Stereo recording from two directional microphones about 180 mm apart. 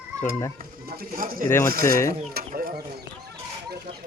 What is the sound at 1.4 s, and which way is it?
Speech, 15° left (ahead or behind).